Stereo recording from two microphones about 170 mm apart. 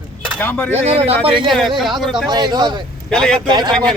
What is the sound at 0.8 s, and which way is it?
A man's voice, 35° right (ahead or behind).